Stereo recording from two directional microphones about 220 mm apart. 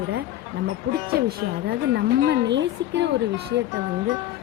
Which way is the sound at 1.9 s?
50° right (ahead or behind).